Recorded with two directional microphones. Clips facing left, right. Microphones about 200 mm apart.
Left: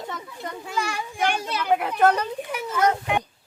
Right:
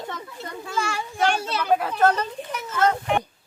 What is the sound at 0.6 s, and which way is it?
A child's voice, 15° left (ahead or behind).